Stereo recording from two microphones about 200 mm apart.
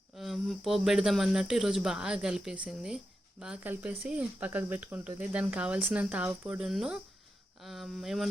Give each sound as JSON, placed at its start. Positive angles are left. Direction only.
{"t": 0.2, "sound": "speech", "side_deg": 0}